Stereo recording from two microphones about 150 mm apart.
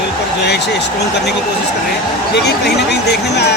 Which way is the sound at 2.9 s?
90° left.